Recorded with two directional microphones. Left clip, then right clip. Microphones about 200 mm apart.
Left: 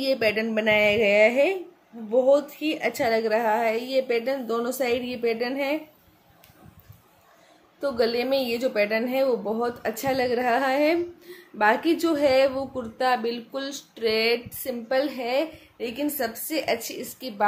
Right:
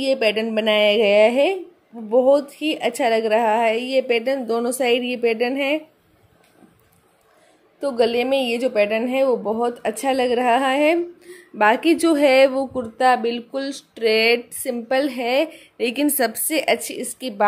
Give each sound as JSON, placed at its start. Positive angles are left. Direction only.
{"t": 0.0, "sound": "a woman's voice", "side_deg": -30}
{"t": 7.8, "sound": "a woman's voice", "side_deg": -30}